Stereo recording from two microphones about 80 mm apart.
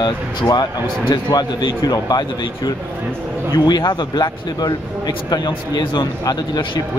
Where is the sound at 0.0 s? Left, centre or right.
Left.